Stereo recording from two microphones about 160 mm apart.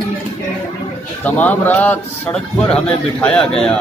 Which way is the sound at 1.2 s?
10° left (ahead or behind).